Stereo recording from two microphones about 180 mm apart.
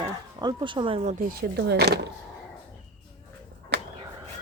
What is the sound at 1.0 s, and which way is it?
Speech, 45° right (ahead or behind).